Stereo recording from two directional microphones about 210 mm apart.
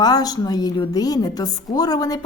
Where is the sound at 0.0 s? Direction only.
20° left (ahead or behind).